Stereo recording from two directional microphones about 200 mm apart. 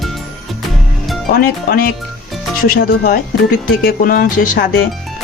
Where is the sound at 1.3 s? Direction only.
45° left (ahead or behind).